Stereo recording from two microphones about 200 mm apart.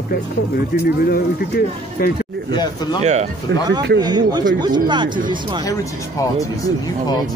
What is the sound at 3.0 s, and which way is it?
Speech, 35° right (ahead or behind).